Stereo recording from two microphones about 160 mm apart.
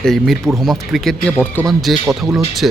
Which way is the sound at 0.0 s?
Centre (ahead or behind).